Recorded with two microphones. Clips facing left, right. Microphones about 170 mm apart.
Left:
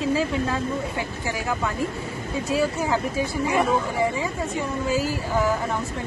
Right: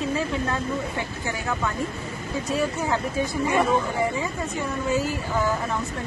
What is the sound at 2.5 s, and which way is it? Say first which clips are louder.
Speech: left 2 dB; 5° left (ahead or behind).